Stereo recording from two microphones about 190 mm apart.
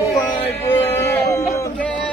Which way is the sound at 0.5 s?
15° left (ahead or behind).